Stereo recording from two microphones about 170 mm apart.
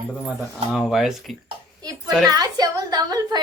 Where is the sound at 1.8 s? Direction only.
20° right (ahead or behind).